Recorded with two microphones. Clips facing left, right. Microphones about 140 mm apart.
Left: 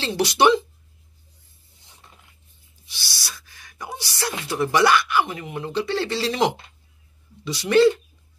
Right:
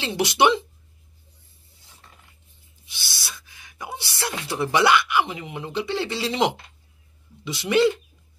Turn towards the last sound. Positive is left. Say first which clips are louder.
# left 3 dB
turn(degrees=-20)  # may be behind; listen again after turning